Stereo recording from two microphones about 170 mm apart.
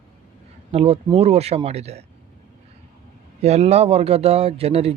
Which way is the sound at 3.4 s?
40° right (ahead or behind).